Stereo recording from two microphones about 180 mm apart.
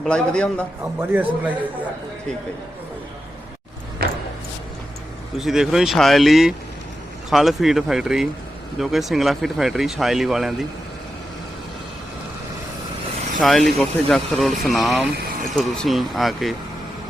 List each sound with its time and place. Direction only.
0.0 s speech: 5° left (ahead or behind)
1.1 s a man's voice: 10° right (ahead or behind)
4.0 s a sound: 60° right (ahead or behind)
5.4 s speech: centre (ahead or behind)
13.4 s speech: centre (ahead or behind)